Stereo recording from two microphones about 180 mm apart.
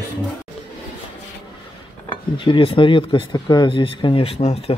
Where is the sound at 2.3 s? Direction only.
25° left (ahead or behind).